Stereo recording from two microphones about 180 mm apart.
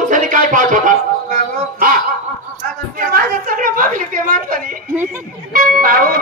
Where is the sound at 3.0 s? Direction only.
50° right (ahead or behind).